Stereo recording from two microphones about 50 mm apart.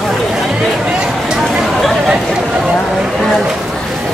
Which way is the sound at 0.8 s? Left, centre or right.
Centre.